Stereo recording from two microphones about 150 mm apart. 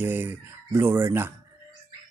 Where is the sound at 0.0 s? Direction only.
15° right (ahead or behind).